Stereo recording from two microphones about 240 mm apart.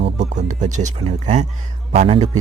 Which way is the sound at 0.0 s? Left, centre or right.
Right.